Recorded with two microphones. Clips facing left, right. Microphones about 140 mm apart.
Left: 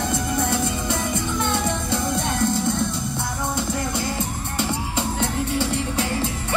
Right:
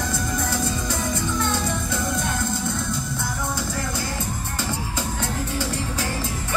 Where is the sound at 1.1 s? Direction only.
20° left (ahead or behind).